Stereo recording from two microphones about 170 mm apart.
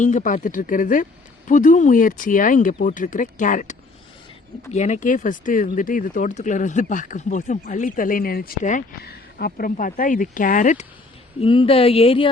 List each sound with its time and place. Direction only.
0.0 s speech: 50° left (ahead or behind)
9.0 s speech: 65° left (ahead or behind); by 10.8 s 50° left (ahead or behind)
11.3 s speech: 30° left (ahead or behind)